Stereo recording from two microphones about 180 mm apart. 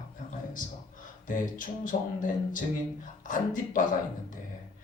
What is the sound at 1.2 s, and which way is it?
A man's voice, 45° left (ahead or behind).